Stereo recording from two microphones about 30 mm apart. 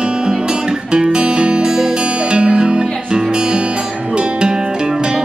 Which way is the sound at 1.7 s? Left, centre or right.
Right.